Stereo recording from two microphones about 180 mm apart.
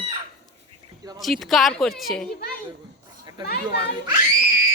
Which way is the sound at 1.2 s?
Centre (ahead or behind).